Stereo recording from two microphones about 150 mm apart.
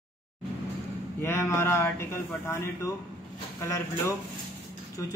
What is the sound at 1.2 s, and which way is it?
A man's voice, 15° left (ahead or behind).